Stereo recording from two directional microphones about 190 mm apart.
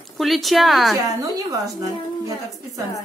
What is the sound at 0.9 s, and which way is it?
Speech, 20° right (ahead or behind).